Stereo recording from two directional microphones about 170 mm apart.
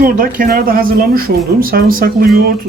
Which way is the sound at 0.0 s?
55° right (ahead or behind).